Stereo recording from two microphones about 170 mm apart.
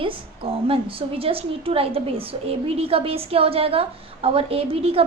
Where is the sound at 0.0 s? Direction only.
35° right (ahead or behind).